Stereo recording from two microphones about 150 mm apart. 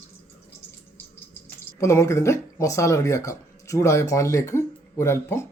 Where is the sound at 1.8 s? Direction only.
20° left (ahead or behind).